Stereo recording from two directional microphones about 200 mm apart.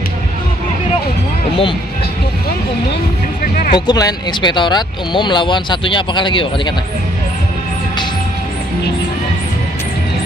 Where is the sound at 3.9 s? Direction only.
20° left (ahead or behind).